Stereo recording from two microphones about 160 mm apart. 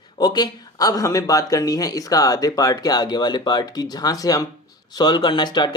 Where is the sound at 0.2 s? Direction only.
25° left (ahead or behind).